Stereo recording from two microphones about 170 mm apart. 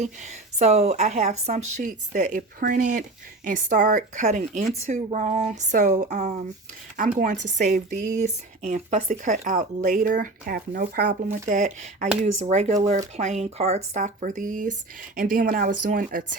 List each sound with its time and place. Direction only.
0.0 s speech: 40° right (ahead or behind)